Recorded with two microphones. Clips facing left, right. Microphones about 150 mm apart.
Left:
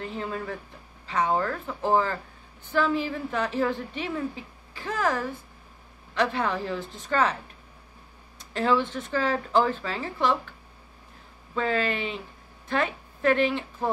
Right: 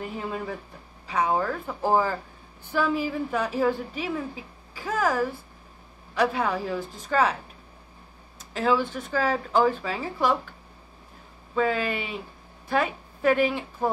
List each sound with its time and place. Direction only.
0.0 s a woman's voice: 10° right (ahead or behind)
8.5 s a woman's voice: 5° right (ahead or behind)
11.5 s a woman's voice: 10° right (ahead or behind)